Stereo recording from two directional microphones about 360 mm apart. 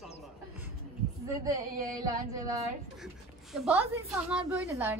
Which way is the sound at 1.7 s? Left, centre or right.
Right.